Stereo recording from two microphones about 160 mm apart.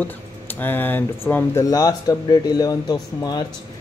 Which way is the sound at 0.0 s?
10° left (ahead or behind).